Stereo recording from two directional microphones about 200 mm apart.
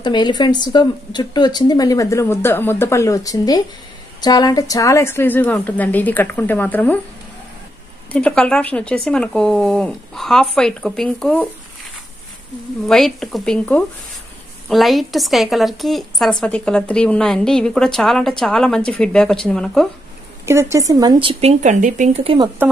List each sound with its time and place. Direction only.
0.0 s a woman's voice: 20° left (ahead or behind)
8.1 s a woman's voice: 5° left (ahead or behind)
12.8 s a woman's voice: centre (ahead or behind)
20.7 s speech: 15° right (ahead or behind)